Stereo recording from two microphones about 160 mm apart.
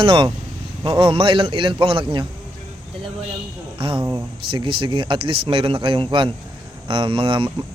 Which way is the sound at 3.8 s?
30° right (ahead or behind).